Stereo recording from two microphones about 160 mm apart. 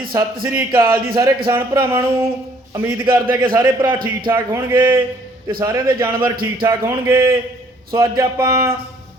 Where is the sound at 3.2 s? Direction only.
25° right (ahead or behind).